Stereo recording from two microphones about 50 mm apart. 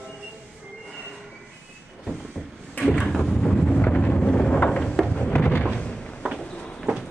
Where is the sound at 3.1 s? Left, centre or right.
Centre.